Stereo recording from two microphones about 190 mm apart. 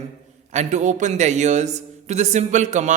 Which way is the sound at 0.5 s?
40° right (ahead or behind).